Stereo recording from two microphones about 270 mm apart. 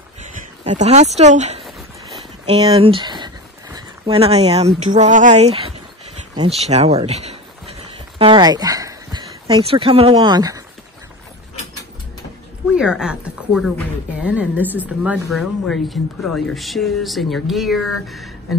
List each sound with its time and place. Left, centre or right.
0.7 s speech: right
12.7 s speech: centre